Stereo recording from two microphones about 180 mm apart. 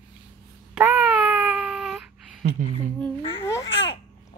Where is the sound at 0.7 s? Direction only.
5° right (ahead or behind).